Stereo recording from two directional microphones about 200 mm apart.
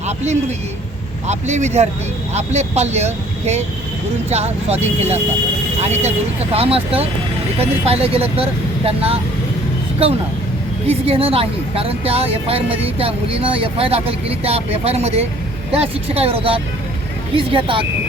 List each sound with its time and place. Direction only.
0.2 s a woman's voice: 35° right (ahead or behind)
10.8 s a woman's voice: 30° right (ahead or behind)